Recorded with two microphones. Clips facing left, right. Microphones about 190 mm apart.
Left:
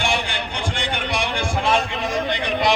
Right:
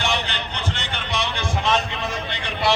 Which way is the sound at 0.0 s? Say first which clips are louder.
Left 2 dB; 10° left (ahead or behind).